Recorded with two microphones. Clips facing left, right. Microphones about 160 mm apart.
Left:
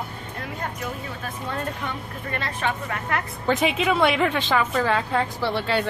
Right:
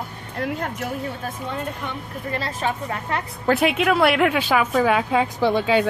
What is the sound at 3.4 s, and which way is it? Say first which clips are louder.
A woman's voice: right 3 dB; 5° right (ahead or behind).